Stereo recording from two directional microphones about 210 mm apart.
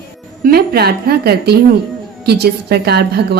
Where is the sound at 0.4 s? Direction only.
50° right (ahead or behind).